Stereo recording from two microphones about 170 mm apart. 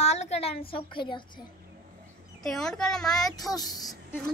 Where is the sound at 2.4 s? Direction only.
5° left (ahead or behind).